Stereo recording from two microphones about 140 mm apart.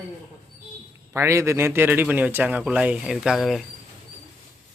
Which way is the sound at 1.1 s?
20° right (ahead or behind).